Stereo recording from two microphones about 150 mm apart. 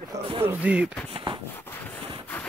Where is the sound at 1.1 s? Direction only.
35° right (ahead or behind).